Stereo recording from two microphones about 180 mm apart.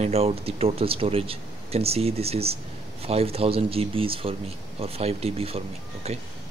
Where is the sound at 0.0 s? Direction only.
35° right (ahead or behind).